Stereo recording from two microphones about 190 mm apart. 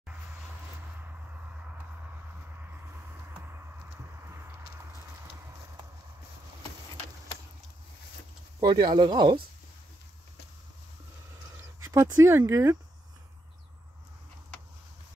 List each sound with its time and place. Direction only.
2.6 s vehicle: 10° right (ahead or behind)
4.2 s a sound: 15° right (ahead or behind)
8.5 s speech: 20° right (ahead or behind)
11.8 s speech: 15° right (ahead or behind)